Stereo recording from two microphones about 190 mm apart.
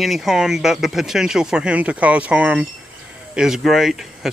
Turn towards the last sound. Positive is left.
turn(degrees=0)  # may be behind; listen again after turning